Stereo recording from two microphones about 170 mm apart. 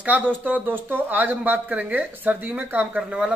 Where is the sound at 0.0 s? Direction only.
10° right (ahead or behind).